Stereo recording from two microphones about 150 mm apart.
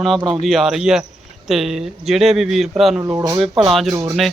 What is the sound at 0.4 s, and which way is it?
A man's voice, centre (ahead or behind).